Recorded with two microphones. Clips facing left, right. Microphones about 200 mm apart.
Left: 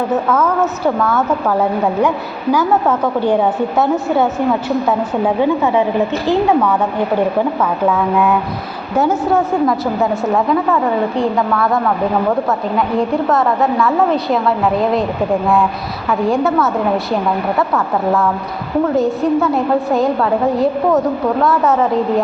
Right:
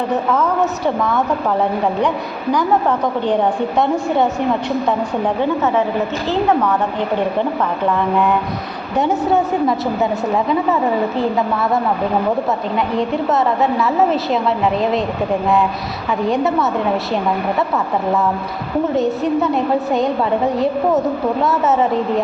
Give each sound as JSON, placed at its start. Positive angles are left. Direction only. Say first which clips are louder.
{"t": 0.1, "sound": "a woman's voice", "louder": "left 2 dB", "side_deg": 0}
{"t": 3.8, "sound": "a woman's voice", "louder": "left 2 dB", "side_deg": 0}
{"t": 7.6, "sound": "a woman's voice", "louder": "left 2 dB", "side_deg": 5}
{"t": 9.8, "sound": "a woman's voice", "louder": "left 2 dB", "side_deg": 0}
{"t": 11.3, "sound": "a woman's voice", "louder": "left 2 dB", "side_deg": -25}
{"t": 13.0, "sound": "a woman's voice", "louder": "left 2 dB", "side_deg": 0}
{"t": 16.2, "sound": "a woman's voice", "louder": "left 2 dB", "side_deg": 0}
{"t": 18.9, "sound": "a woman's voice", "louder": "left 2 dB", "side_deg": 0}